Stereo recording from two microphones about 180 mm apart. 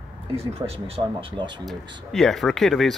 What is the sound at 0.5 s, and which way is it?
Speech, 35° right (ahead or behind).